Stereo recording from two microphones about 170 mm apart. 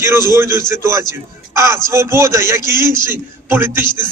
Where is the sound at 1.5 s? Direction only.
15° right (ahead or behind).